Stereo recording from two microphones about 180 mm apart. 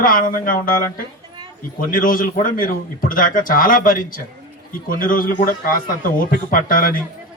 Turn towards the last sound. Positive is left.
turn(degrees=50)  # may be behind; listen again after turning